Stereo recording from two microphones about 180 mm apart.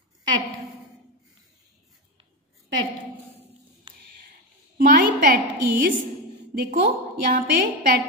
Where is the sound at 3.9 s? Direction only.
30° right (ahead or behind).